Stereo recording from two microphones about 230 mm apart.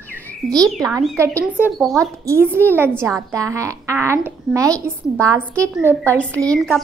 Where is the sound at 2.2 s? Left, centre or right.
Centre.